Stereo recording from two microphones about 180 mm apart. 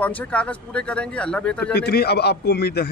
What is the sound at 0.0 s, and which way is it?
Speech, 5° left (ahead or behind).